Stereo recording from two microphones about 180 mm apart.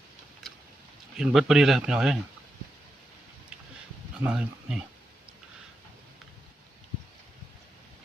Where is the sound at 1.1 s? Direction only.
Centre (ahead or behind).